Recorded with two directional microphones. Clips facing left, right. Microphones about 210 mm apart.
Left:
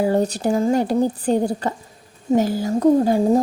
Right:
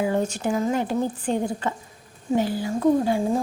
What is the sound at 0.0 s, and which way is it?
A woman's voice, 35° left (ahead or behind).